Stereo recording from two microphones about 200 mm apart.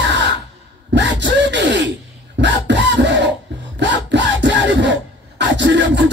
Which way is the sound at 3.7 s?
65° right (ahead or behind).